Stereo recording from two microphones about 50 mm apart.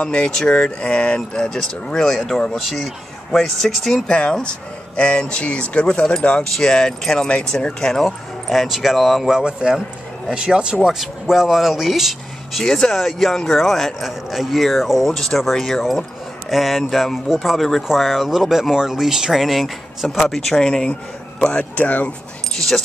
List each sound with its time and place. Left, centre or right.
0.0 s speech: centre
4.1 s speech: centre
8.0 s speech: centre
9.3 s speech: centre
11.0 s speech: centre
12.6 s speech: centre
21.5 s speech: left